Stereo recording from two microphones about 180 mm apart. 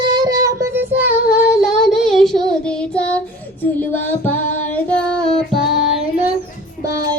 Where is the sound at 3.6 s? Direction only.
10° left (ahead or behind).